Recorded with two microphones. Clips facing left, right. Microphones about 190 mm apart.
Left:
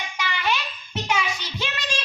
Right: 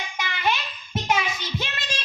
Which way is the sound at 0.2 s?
50° right (ahead or behind).